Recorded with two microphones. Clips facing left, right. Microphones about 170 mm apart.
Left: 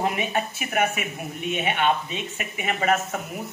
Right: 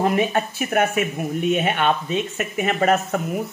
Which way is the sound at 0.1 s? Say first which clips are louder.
Right 6 dB; 50° right (ahead or behind).